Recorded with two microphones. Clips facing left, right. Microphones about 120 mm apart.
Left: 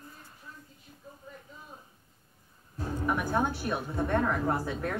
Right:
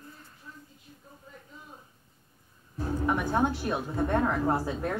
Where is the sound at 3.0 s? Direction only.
20° right (ahead or behind).